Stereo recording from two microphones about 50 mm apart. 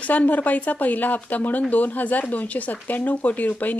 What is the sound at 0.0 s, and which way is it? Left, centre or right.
Speech, left.